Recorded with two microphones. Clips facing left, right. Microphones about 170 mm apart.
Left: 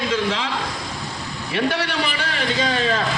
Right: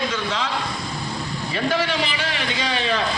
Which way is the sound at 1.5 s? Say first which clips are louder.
Left 1 dB; 70° left (ahead or behind).